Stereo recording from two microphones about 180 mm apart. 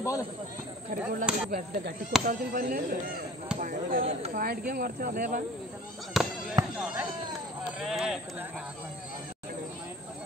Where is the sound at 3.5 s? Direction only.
45° right (ahead or behind).